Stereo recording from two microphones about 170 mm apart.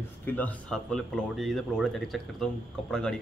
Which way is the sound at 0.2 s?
10° left (ahead or behind).